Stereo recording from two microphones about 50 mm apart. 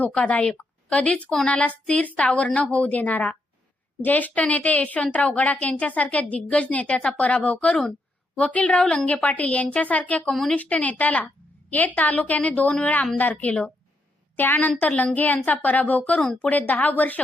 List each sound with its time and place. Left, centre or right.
0.0 s a woman's voice: left
14.3 s a woman's voice: left